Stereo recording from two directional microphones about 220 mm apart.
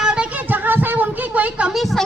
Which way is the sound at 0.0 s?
5° right (ahead or behind).